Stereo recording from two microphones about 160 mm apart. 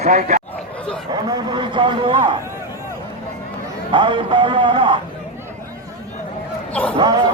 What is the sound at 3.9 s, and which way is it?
Speech, 30° right (ahead or behind).